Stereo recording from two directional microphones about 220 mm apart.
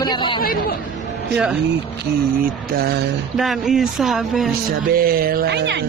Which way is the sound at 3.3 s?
Centre (ahead or behind).